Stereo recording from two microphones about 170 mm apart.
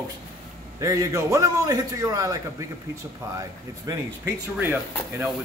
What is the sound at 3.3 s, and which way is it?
Speech, 15° right (ahead or behind).